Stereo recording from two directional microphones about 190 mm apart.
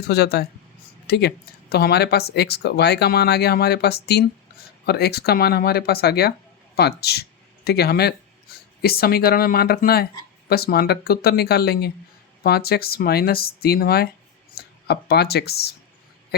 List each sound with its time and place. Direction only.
0.0 s speech: 55° left (ahead or behind)